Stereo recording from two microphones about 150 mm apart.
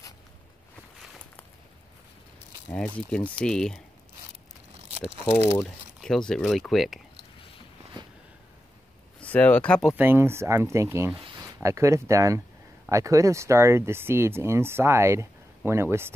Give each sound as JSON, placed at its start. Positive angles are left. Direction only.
{"t": 2.7, "sound": "speech", "side_deg": 5}
{"t": 5.6, "sound": "speech", "side_deg": 5}
{"t": 9.2, "sound": "speech", "side_deg": 10}
{"t": 9.8, "sound": "speech", "side_deg": -10}